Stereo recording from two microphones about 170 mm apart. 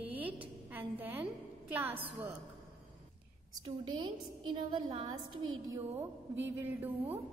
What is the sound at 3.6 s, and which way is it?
A woman's voice, 25° right (ahead or behind).